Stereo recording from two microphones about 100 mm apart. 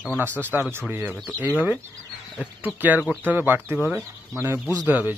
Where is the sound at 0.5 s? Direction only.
20° right (ahead or behind).